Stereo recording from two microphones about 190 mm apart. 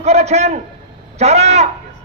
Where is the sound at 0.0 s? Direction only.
35° right (ahead or behind).